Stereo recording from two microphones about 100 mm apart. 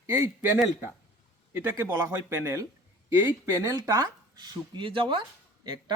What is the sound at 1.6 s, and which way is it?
Speech, 25° right (ahead or behind).